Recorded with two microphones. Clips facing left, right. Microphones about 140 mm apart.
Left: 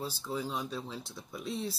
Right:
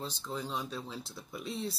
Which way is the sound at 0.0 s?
5° left (ahead or behind).